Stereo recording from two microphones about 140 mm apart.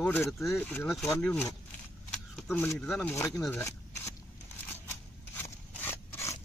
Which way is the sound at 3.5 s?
20° left (ahead or behind).